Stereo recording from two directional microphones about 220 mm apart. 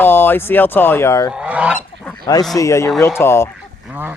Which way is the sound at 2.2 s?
20° left (ahead or behind).